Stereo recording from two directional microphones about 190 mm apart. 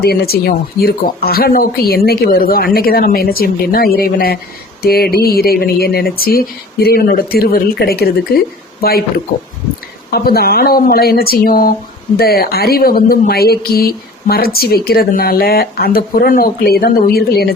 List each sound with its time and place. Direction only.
0.0 s speech: 55° left (ahead or behind)
10.1 s speech: 55° left (ahead or behind)